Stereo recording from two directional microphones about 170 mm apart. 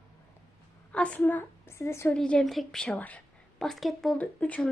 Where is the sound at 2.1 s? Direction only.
5° left (ahead or behind).